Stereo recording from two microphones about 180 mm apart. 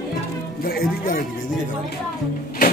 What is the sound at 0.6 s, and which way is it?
Speech, 55° left (ahead or behind).